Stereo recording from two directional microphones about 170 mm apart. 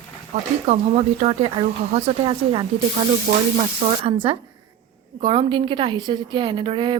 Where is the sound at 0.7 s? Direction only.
40° right (ahead or behind).